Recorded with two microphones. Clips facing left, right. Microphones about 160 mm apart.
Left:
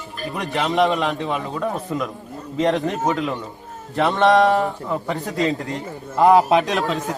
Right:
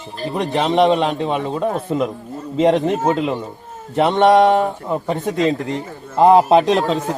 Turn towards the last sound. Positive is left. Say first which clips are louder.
# right 5 dB
turn(degrees=-35)  # may be behind; listen again after turning